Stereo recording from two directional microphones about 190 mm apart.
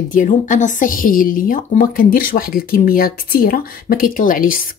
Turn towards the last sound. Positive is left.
turn(degrees=45)  # may be behind; listen again after turning